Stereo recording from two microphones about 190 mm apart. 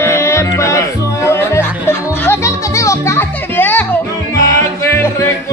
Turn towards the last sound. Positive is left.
turn(degrees=15)  # may be behind; listen again after turning